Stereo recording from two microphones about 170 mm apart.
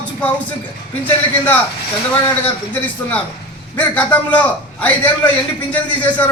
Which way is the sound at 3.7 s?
10° left (ahead or behind).